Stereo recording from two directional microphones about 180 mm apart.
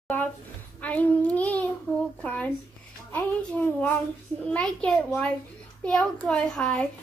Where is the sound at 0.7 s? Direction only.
10° left (ahead or behind).